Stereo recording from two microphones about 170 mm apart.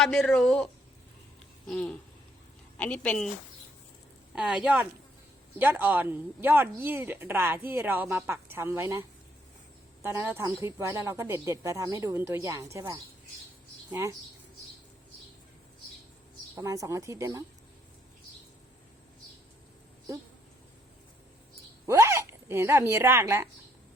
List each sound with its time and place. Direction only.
0.0 s a woman's voice: centre (ahead or behind)
4.4 s a woman's voice: 5° right (ahead or behind)
16.6 s speech: 20° right (ahead or behind)
21.8 s a woman's voice: 15° right (ahead or behind)